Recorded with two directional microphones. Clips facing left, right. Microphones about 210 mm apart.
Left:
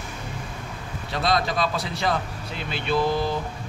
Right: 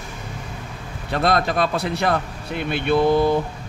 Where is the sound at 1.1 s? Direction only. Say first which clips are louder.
Right 4 dB; 55° right (ahead or behind).